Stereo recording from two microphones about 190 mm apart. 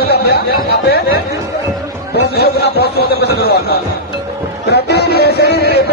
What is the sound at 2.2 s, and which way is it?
A man's voice, 60° left (ahead or behind).